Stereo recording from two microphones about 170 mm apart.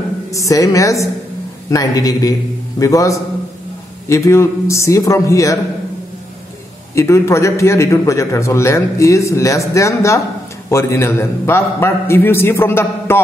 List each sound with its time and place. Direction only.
0.3 s a woman's voice: 20° left (ahead or behind)
7.0 s a man's voice: 15° left (ahead or behind)